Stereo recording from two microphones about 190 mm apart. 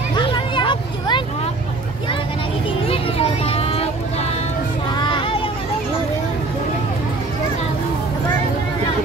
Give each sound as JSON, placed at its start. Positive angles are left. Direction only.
{"t": 0.1, "sound": "a sound", "side_deg": 25}
{"t": 2.9, "sound": "children playing", "side_deg": 30}
{"t": 4.9, "sound": "child singing", "side_deg": 25}